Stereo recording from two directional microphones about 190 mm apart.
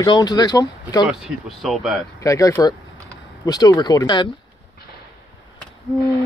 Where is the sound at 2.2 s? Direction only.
15° left (ahead or behind).